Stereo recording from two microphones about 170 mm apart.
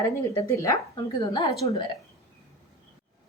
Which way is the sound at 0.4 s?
20° left (ahead or behind).